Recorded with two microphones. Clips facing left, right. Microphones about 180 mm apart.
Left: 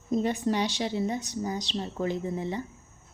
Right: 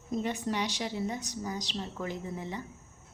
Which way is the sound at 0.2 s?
35° left (ahead or behind).